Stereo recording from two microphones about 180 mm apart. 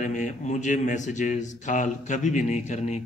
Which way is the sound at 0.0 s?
40° left (ahead or behind).